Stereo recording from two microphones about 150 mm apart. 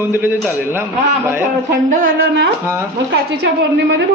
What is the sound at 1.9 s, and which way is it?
Speech, 80° right.